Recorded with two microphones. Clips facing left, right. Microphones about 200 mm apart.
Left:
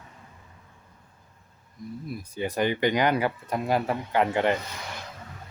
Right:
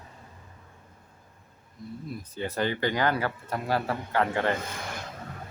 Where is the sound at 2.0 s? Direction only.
10° left (ahead or behind).